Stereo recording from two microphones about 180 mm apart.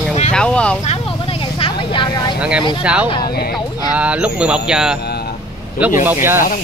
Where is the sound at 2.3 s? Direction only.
5° right (ahead or behind).